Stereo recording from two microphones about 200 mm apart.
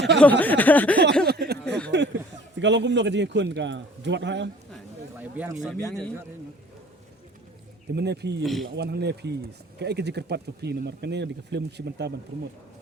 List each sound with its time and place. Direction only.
0.2 s speech: 10° left (ahead or behind)
1.2 s a sound: 55° right (ahead or behind)
2.0 s speech: 60° right (ahead or behind)
5.1 s speech: 10° right (ahead or behind)
5.7 s a man's voice: 5° left (ahead or behind)
7.9 s speech: 55° right (ahead or behind)